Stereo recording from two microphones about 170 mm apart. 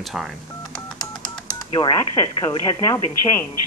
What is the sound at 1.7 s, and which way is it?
Speech, 20° left (ahead or behind).